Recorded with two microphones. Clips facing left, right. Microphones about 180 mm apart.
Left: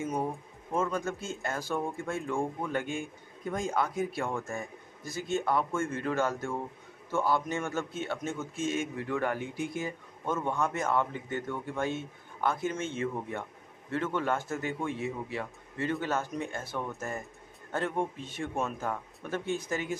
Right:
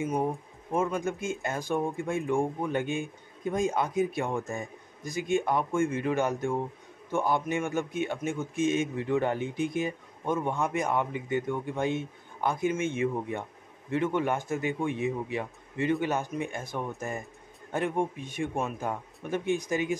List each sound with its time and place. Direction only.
0.0 s a man's voice: 15° right (ahead or behind)